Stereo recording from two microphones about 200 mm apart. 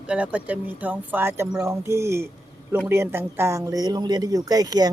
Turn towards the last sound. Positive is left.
turn(degrees=-20)  # may be behind; listen again after turning